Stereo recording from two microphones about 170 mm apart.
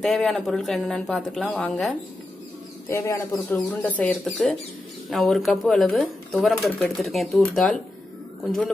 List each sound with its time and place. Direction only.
0.0 s speech: centre (ahead or behind)
2.9 s speech: 20° left (ahead or behind)
3.5 s speech: 10° left (ahead or behind)